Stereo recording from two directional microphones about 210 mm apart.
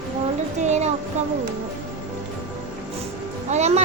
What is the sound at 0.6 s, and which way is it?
Speech, 35° right (ahead or behind).